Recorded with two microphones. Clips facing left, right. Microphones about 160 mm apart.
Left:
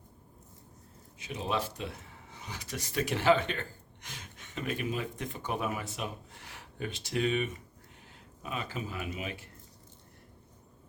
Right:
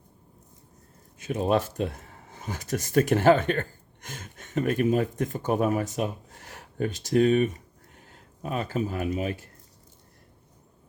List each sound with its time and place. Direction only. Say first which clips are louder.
1.2 s speech: right 9 dB; 50° right (ahead or behind)